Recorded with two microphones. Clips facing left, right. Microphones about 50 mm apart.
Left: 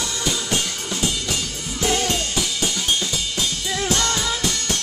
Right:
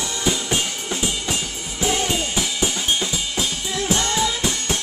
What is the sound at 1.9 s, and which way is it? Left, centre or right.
Music, centre.